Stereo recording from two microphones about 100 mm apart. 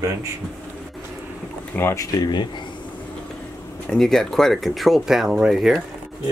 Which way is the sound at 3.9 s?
5° left (ahead or behind).